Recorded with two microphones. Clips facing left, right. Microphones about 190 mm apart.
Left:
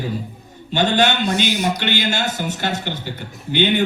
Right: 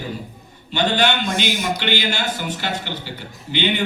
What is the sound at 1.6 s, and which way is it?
Speech, 50° left (ahead or behind).